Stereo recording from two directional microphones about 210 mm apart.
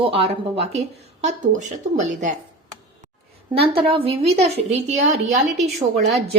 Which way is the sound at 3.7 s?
25° right (ahead or behind).